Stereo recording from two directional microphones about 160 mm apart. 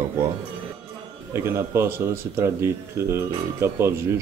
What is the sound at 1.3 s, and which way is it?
Speech, 15° right (ahead or behind).